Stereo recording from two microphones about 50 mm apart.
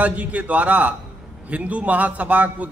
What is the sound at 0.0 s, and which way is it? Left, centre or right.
A man's voice, right.